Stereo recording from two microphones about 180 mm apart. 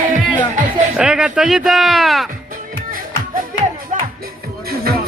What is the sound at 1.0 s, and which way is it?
Speech, 5° right (ahead or behind).